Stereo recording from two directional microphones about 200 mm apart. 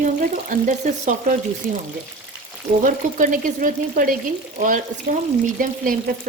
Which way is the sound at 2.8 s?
40° right (ahead or behind).